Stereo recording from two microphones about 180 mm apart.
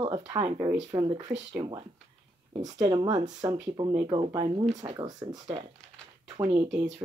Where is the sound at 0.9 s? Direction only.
20° right (ahead or behind).